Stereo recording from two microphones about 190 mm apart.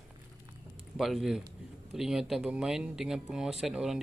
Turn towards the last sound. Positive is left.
turn(degrees=-5)  # may be behind; listen again after turning